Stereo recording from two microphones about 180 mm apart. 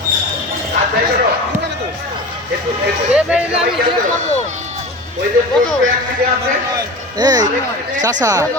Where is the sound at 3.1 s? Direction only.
5° right (ahead or behind).